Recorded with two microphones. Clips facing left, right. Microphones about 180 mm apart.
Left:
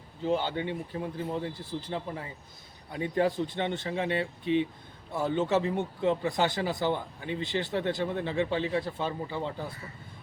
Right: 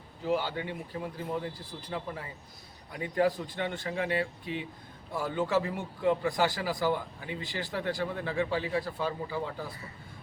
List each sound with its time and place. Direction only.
0.3 s speech: 25° left (ahead or behind)